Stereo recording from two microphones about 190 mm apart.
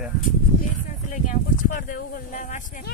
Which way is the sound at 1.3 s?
45° left (ahead or behind).